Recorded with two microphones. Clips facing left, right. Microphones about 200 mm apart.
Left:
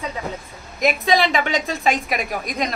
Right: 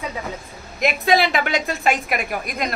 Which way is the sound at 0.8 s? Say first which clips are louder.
Even; 5° right (ahead or behind).